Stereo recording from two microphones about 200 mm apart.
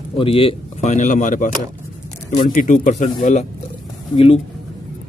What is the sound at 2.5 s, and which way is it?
Speech, 40° left (ahead or behind).